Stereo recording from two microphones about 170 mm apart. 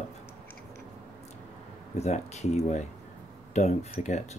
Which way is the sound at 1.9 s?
40° left (ahead or behind).